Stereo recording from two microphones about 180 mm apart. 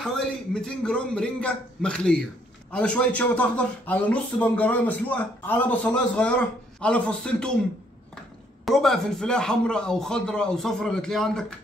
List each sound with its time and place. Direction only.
0.0 s speech: 5° left (ahead or behind)
8.6 s speech: centre (ahead or behind)